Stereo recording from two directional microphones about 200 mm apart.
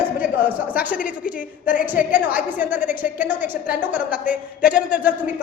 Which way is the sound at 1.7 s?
40° left (ahead or behind).